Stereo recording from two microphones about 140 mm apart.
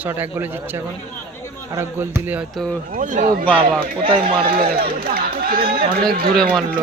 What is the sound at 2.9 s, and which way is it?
Speech, 70° right (ahead or behind).